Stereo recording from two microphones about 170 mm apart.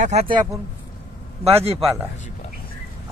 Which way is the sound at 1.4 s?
35° right (ahead or behind).